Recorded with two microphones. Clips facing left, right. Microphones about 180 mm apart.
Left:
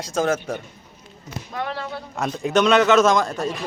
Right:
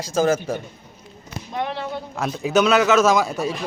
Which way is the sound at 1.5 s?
20° right (ahead or behind).